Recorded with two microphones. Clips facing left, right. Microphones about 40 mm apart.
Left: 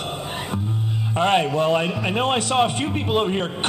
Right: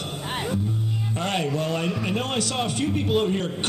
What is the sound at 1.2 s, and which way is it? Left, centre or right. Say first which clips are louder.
A man's voice: left 8 dB; left.